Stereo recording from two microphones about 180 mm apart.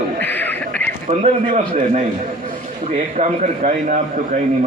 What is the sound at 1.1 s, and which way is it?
A man's voice, 35° right (ahead or behind).